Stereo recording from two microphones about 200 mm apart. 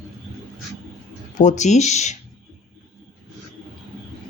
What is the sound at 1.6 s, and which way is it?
Speech, 35° left (ahead or behind).